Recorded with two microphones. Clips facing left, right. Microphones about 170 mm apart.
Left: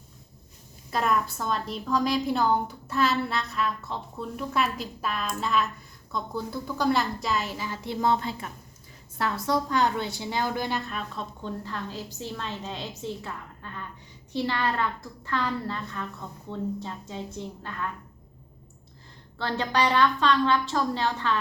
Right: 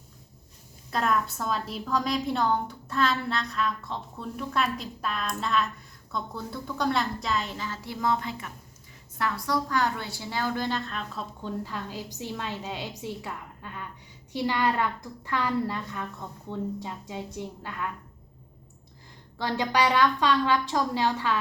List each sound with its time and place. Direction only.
0.9 s a woman's voice: 5° left (ahead or behind)
11.1 s a woman's voice: 5° right (ahead or behind)
19.4 s a woman's voice: 10° right (ahead or behind)